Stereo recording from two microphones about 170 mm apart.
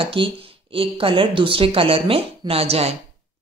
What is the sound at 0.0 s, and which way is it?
A woman's voice, 30° right (ahead or behind).